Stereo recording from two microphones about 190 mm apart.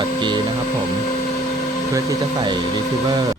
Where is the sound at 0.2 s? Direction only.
25° right (ahead or behind).